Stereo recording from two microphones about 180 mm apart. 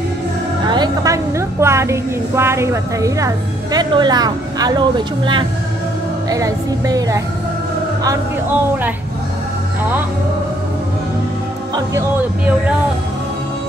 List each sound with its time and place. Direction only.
0.7 s a woman's voice: 20° right (ahead or behind)